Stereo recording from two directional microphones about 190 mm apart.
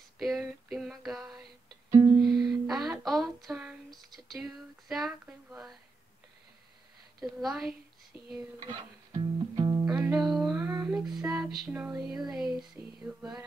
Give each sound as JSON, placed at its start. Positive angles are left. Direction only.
{"t": 0.2, "sound": "female singing", "side_deg": 0}
{"t": 1.9, "sound": "music", "side_deg": -20}
{"t": 2.4, "sound": "a sound", "side_deg": 0}
{"t": 7.2, "sound": "a sound", "side_deg": 0}
{"t": 8.4, "sound": "music", "side_deg": -20}
{"t": 9.8, "sound": "music", "side_deg": -5}
{"t": 10.7, "sound": "child singing", "side_deg": -15}
{"t": 11.0, "sound": "music", "side_deg": 0}
{"t": 12.2, "sound": "a sound", "side_deg": 0}